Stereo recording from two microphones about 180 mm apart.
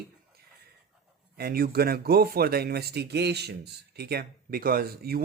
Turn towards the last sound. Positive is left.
turn(degrees=-60)  # may be behind; listen again after turning